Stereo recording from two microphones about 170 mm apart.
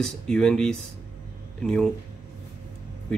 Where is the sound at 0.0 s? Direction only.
5° left (ahead or behind).